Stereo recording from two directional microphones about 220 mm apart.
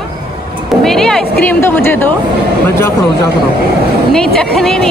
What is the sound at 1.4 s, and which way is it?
Speech, 10° left (ahead or behind).